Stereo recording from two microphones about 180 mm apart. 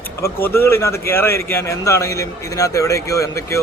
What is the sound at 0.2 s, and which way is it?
A man's voice, 15° left (ahead or behind).